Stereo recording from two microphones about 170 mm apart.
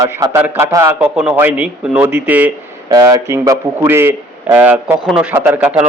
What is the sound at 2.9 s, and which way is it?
A man's voice, 20° right (ahead or behind).